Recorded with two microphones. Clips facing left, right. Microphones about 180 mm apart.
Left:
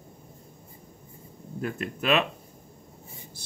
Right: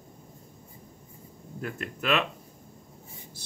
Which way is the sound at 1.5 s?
20° left (ahead or behind).